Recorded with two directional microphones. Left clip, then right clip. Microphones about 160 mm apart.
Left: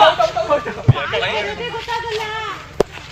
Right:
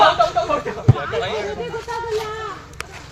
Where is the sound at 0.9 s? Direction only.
90° right.